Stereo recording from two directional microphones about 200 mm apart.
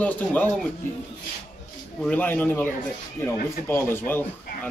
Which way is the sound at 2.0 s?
10° left (ahead or behind).